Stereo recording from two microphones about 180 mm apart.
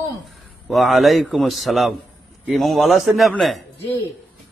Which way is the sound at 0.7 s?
Centre (ahead or behind).